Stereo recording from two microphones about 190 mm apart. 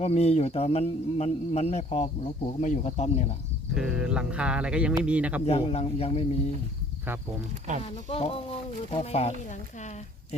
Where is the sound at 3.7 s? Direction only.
5° right (ahead or behind).